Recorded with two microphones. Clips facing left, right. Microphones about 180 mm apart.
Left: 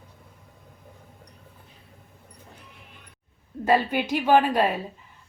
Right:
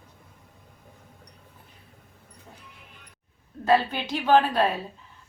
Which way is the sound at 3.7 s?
15° left (ahead or behind).